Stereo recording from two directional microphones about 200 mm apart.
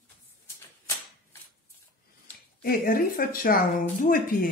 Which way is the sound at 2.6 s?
45° left (ahead or behind).